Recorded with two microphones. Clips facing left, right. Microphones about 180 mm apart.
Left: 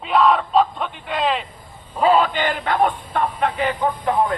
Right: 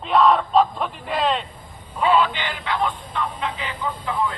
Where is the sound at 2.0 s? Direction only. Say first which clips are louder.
Left 3 dB; 40° left (ahead or behind); by 4.1 s 55° left (ahead or behind).